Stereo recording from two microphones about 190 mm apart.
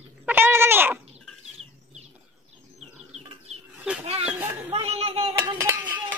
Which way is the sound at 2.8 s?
35° right (ahead or behind).